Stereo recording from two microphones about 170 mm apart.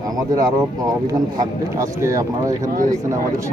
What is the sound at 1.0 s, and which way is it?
A man's voice, 20° right (ahead or behind).